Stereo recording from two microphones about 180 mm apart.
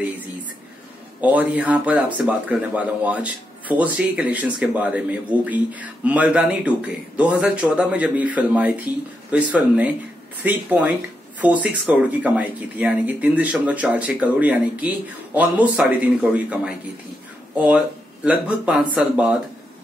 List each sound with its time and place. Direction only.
1.2 s speech: 10° right (ahead or behind)